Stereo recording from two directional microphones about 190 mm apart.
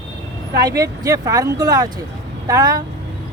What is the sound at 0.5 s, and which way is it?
Speech, 20° right (ahead or behind).